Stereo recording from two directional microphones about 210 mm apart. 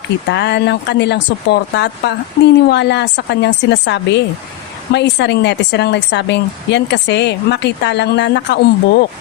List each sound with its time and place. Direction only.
0.3 s a woman's voice: 55° left (ahead or behind)